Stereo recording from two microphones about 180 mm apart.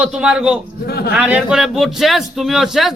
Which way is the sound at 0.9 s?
60° left (ahead or behind).